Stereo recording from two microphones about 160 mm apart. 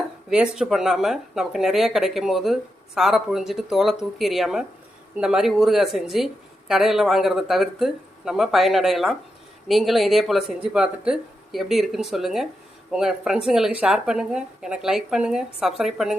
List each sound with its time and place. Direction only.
0.3 s speech: 5° right (ahead or behind)